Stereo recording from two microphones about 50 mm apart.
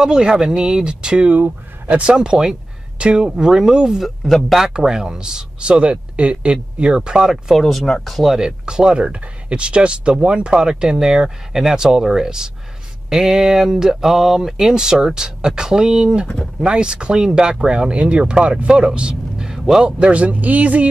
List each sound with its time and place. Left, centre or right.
0.0 s speech: centre
4.0 s speech: centre
7.6 s speech: centre
8.3 s speech: centre
20.0 s speech: right